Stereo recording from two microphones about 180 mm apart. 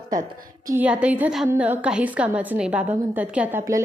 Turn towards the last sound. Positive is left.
turn(degrees=-10)  # may be behind; listen again after turning